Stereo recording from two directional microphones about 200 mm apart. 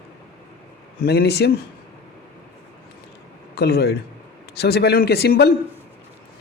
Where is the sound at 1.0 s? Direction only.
55° left (ahead or behind).